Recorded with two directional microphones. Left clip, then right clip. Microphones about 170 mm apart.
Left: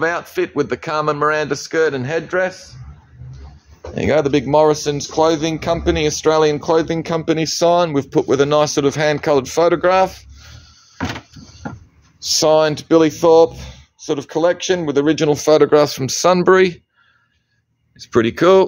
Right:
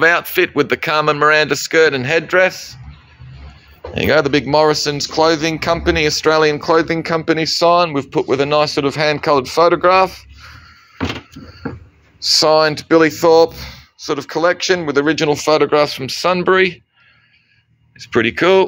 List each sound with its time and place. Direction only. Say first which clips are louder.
0.0 s speech: right 6 dB; 10° right (ahead or behind)
3.9 s speech: right 2 dB; 10° left (ahead or behind); by 10.6 s 40° left (ahead or behind)
12.2 s speech: right 2 dB; 30° left (ahead or behind); by 16.8 s 50° left (ahead or behind)
17.9 s speech: right 1 dB; 45° left (ahead or behind)